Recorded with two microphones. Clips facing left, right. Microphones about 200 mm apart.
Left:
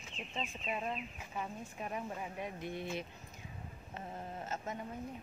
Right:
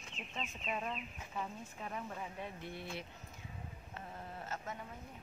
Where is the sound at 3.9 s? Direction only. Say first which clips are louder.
Left 5 dB; 20° left (ahead or behind).